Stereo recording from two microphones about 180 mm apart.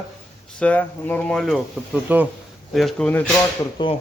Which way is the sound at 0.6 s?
10° left (ahead or behind).